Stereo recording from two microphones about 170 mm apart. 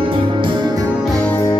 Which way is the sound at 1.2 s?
10° left (ahead or behind).